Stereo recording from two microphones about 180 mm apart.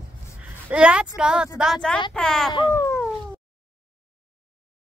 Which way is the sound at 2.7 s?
15° left (ahead or behind).